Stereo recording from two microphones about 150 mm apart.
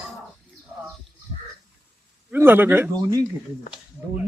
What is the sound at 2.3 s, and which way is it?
Speech, 15° right (ahead or behind).